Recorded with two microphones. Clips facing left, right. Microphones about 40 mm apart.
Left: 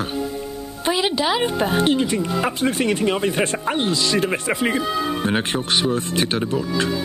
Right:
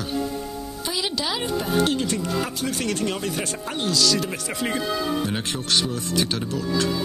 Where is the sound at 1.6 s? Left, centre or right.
Left.